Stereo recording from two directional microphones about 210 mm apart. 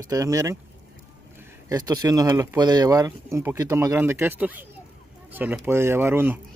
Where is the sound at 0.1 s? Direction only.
15° right (ahead or behind).